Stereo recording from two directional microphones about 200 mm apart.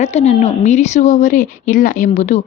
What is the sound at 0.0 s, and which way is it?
A woman's voice, 35° left (ahead or behind).